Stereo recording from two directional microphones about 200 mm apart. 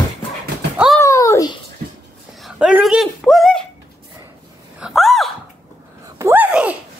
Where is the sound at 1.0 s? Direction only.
15° left (ahead or behind).